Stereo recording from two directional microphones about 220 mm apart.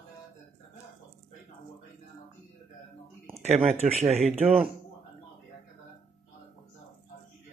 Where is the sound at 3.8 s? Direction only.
30° right (ahead or behind).